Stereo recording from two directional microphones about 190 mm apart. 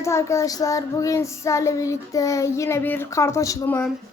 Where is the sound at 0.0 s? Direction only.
15° left (ahead or behind).